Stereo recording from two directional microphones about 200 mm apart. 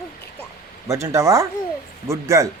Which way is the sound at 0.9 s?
15° right (ahead or behind).